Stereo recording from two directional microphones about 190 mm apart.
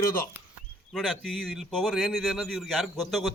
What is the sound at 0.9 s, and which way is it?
Speech, centre (ahead or behind).